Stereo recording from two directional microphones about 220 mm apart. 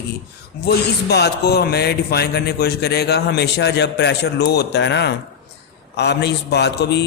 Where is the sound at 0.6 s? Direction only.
45° left (ahead or behind).